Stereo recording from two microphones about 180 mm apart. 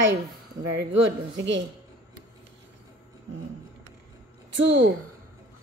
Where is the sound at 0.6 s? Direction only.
90° right.